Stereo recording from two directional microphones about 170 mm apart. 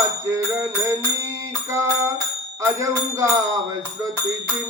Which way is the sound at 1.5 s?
15° right (ahead or behind).